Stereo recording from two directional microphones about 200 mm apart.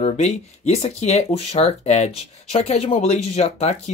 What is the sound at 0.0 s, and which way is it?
Speech, 30° left (ahead or behind).